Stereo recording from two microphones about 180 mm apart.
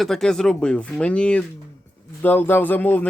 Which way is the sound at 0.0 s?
Centre (ahead or behind).